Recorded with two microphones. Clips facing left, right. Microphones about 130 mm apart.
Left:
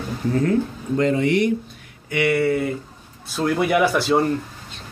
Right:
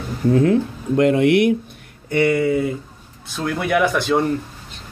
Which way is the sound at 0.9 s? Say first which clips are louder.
Right 4 dB; 65° right (ahead or behind).